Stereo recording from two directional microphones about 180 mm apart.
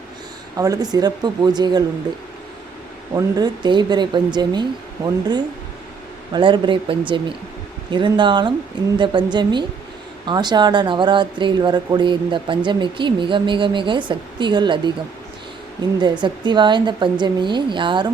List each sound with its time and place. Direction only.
0.5 s speech: 20° right (ahead or behind)
3.2 s speech: 20° right (ahead or behind)
6.3 s speech: 25° right (ahead or behind)
16.0 s speech: 25° right (ahead or behind)